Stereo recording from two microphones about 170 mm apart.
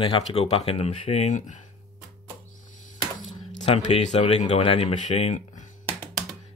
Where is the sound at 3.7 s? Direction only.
40° left (ahead or behind).